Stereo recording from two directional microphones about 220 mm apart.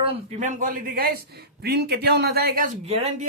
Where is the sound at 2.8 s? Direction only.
25° right (ahead or behind).